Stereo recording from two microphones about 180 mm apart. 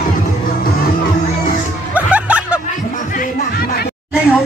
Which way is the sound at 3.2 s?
60° left (ahead or behind).